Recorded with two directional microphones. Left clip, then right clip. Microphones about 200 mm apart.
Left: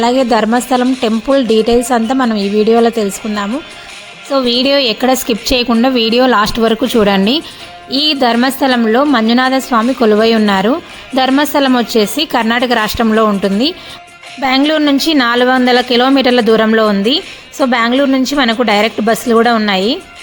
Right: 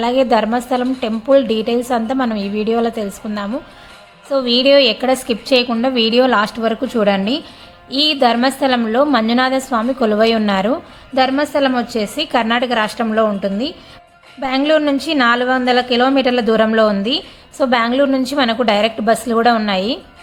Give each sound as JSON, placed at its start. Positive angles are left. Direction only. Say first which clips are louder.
{"t": 0.0, "sound": "a woman's voice", "louder": "left 3 dB", "side_deg": 30}